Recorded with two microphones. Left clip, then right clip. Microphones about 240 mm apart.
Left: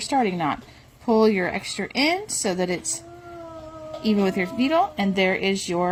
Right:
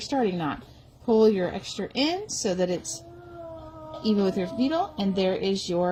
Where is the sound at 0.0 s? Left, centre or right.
Left.